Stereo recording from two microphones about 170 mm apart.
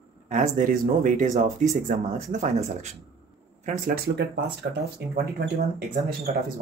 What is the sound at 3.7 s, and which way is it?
Speech, 60° right (ahead or behind).